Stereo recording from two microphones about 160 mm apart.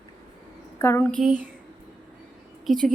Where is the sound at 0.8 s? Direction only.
15° left (ahead or behind).